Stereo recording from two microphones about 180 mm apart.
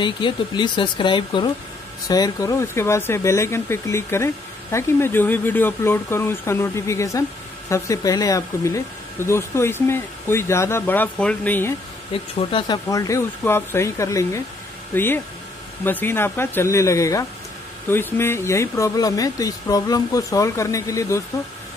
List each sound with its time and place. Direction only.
0.0 s speech: 25° left (ahead or behind); by 11.7 s 10° left (ahead or behind)
12.1 s speech: 30° left (ahead or behind)
15.8 s speech: 10° left (ahead or behind)